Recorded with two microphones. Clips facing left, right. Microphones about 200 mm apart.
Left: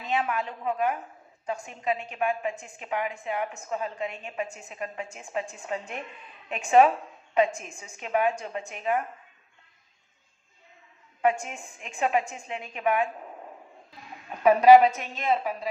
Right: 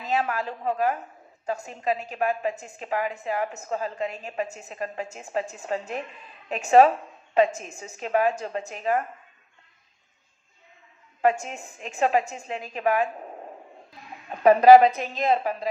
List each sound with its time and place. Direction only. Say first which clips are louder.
0.0 s a woman's voice: right 2 dB; 35° right (ahead or behind)
11.3 s a woman's voice: right 2 dB; 40° right (ahead or behind)